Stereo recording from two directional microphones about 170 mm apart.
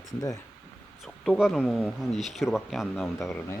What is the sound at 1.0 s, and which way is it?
Speech, centre (ahead or behind).